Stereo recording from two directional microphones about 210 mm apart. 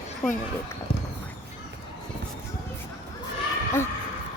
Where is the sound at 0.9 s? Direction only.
25° left (ahead or behind).